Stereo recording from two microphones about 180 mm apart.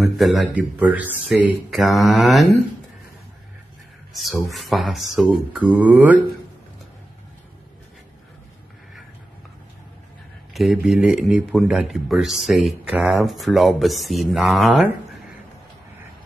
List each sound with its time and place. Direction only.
0.2 s a man's voice: centre (ahead or behind)
4.1 s speech: centre (ahead or behind)
10.5 s speech: centre (ahead or behind)